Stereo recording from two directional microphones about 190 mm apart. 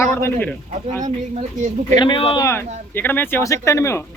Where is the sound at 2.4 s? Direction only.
10° left (ahead or behind).